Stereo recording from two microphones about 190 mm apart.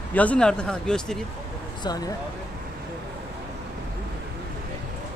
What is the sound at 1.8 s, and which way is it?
Speech, 20° left (ahead or behind).